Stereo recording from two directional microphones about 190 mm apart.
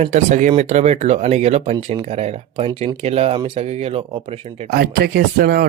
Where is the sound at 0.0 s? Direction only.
40° right (ahead or behind).